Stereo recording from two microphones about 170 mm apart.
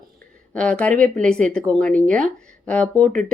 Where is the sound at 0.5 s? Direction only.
5° left (ahead or behind).